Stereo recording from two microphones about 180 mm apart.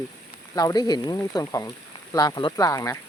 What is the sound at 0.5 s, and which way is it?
Speech, 20° left (ahead or behind).